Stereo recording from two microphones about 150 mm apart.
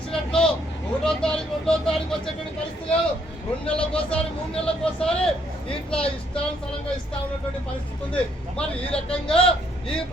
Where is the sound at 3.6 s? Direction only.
5° left (ahead or behind).